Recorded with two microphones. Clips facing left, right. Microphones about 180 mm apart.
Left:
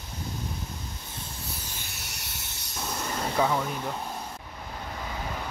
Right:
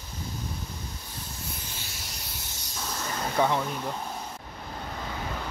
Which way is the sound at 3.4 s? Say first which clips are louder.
Right 1 dB; centre (ahead or behind).